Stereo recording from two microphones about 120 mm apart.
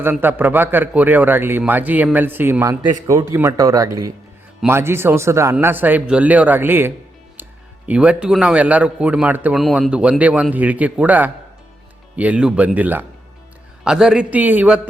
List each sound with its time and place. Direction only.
0.0 s a man's voice: 15° right (ahead or behind)
9.6 s a man's voice: centre (ahead or behind)